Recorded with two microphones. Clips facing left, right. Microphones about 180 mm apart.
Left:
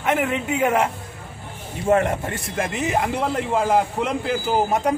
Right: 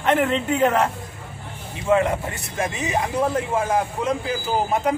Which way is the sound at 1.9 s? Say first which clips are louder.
Even; 50° left (ahead or behind).